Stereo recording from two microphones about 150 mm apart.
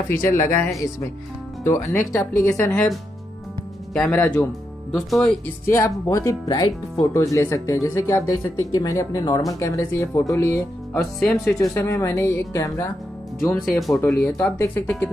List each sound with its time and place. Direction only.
0.2 s speech: 20° left (ahead or behind)
3.9 s speech: 10° left (ahead or behind)
5.7 s speech: 20° left (ahead or behind)
11.1 s speech: centre (ahead or behind)
11.7 s speech: 20° left (ahead or behind)
13.7 s speech: centre (ahead or behind)
14.2 s speech: 15° left (ahead or behind)